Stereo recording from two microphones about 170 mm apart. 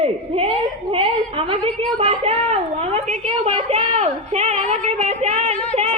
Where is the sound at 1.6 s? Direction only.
35° right (ahead or behind).